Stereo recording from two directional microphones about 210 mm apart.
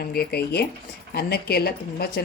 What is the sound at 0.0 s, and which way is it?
A woman's voice, 50° left (ahead or behind).